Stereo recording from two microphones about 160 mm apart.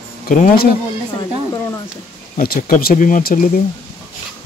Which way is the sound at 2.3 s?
65° left (ahead or behind).